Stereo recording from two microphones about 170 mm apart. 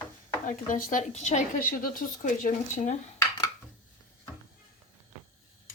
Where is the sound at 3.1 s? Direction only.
20° left (ahead or behind).